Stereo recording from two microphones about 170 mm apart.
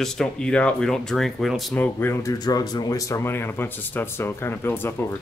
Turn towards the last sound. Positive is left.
turn(degrees=10)  # may be behind; listen again after turning